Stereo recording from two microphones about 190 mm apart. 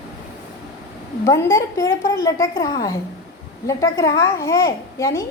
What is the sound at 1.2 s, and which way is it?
A child's voice, 15° left (ahead or behind).